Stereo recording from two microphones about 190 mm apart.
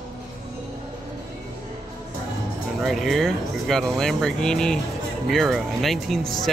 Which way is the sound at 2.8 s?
Centre (ahead or behind).